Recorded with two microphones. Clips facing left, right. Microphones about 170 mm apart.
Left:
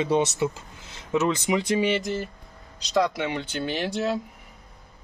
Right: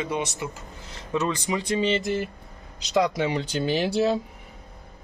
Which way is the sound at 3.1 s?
35° right (ahead or behind).